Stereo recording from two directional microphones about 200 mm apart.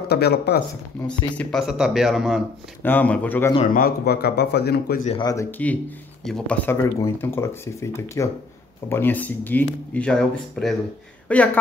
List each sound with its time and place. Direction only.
0.1 s speech: 55° left (ahead or behind)
1.0 s speech: 5° left (ahead or behind)
2.8 s speech: 10° left (ahead or behind)
3.7 s speech: 50° left (ahead or behind)
5.2 s speech: 15° left (ahead or behind)